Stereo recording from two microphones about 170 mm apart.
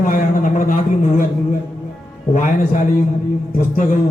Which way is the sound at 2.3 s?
50° left (ahead or behind).